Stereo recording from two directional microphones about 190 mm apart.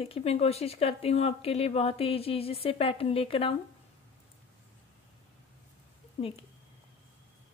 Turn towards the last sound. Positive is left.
turn(degrees=35)  # may be behind; listen again after turning